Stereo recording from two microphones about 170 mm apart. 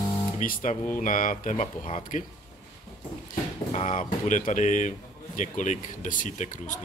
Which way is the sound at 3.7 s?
40° left (ahead or behind).